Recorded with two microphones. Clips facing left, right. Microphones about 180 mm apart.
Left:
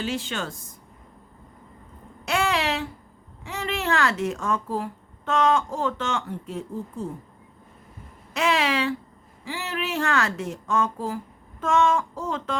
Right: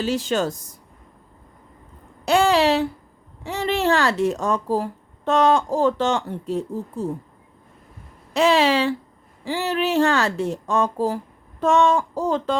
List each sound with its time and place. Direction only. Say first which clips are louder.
0.0 s speech: right 7 dB; 40° right (ahead or behind)
2.2 s speech: right 8 dB; 35° right (ahead or behind)
8.3 s speech: right 6 dB; 30° right (ahead or behind)